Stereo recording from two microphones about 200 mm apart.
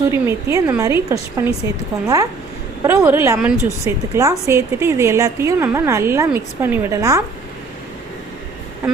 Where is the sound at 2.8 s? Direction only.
10° right (ahead or behind).